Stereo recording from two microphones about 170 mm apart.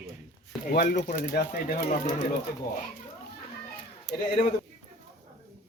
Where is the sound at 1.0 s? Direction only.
50° left (ahead or behind).